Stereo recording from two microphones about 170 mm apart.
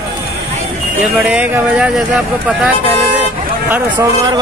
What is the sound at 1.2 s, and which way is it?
Speech, 5° right (ahead or behind).